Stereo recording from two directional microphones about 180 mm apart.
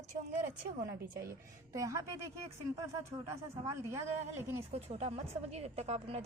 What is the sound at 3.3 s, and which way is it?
Speech, 15° right (ahead or behind).